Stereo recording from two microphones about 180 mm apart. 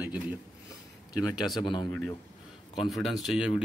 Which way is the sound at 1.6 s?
25° left (ahead or behind).